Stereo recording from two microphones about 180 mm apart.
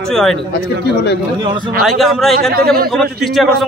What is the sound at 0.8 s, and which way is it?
Speech, 70° left (ahead or behind).